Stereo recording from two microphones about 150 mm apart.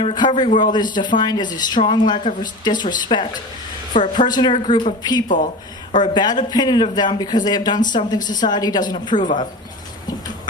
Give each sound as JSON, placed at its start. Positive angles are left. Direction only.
{"t": 0.0, "sound": "a woman's voice", "side_deg": 30}